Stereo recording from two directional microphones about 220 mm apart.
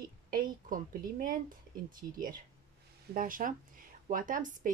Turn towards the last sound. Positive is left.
turn(degrees=-35)  # may be behind; listen again after turning